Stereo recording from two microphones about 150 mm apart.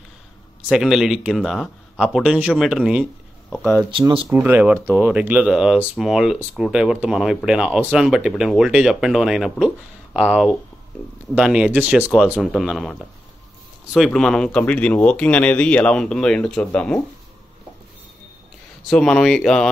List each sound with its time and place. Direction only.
0.7 s speech: centre (ahead or behind)
3.9 s speech: 35° right (ahead or behind)
4.3 s speech: 10° right (ahead or behind); by 17.0 s 5° left (ahead or behind)
18.9 s speech: 5° left (ahead or behind)